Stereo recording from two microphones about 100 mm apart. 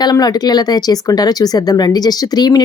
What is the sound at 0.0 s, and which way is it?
Speech, 40° left (ahead or behind).